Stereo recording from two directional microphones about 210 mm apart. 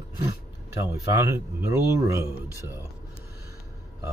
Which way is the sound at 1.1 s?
10° right (ahead or behind).